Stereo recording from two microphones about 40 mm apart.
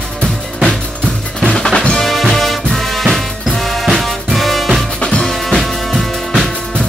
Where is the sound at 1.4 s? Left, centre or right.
Centre.